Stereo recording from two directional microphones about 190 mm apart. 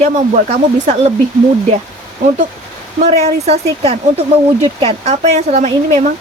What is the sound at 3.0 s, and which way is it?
Speech, 35° right (ahead or behind).